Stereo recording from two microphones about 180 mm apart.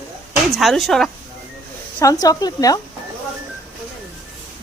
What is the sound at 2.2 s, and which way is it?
Speech, 20° left (ahead or behind).